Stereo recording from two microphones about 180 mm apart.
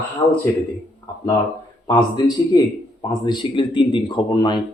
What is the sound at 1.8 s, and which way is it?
Speech, 20° left (ahead or behind).